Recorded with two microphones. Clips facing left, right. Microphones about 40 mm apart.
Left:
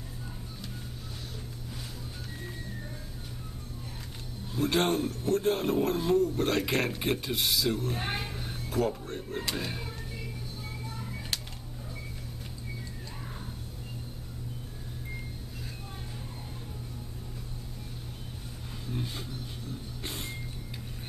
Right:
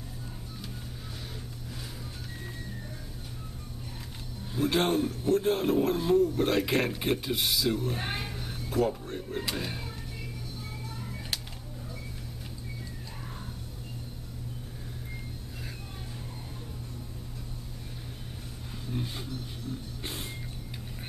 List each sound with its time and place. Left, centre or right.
4.6 s a man's voice: centre
11.0 s music: centre
18.9 s a sound: centre
20.0 s music: centre